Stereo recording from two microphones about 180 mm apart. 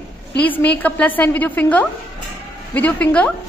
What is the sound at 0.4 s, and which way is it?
A woman's voice, 10° left (ahead or behind).